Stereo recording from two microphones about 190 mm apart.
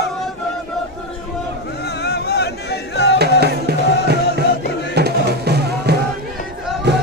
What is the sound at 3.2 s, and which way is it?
Music, 60° right (ahead or behind).